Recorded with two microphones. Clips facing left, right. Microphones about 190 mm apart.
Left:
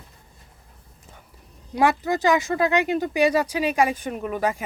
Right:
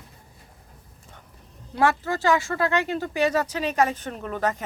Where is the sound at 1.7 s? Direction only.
15° left (ahead or behind).